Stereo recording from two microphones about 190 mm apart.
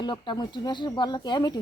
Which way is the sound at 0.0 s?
25° left (ahead or behind).